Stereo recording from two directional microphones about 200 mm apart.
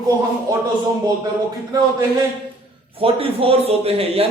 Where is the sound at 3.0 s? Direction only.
30° right (ahead or behind).